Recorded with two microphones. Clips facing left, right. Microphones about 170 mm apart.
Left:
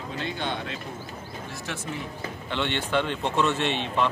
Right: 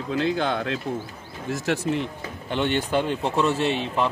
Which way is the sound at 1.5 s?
80° right.